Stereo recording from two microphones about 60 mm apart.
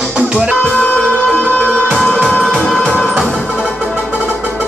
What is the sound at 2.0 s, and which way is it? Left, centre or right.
Music, centre.